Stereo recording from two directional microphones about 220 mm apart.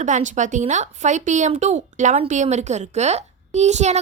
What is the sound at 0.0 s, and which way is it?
A woman's voice, 35° right (ahead or behind).